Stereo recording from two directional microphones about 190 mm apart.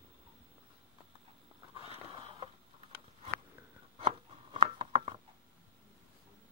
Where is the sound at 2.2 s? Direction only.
25° right (ahead or behind).